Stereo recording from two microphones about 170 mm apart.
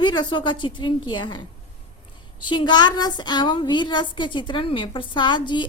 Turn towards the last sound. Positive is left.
turn(degrees=25)  # may be behind; listen again after turning